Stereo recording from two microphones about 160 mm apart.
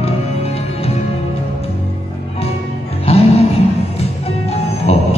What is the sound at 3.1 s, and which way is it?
Music, 40° left (ahead or behind).